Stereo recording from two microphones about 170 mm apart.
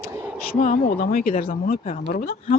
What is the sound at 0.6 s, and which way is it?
Speech, 50° left (ahead or behind).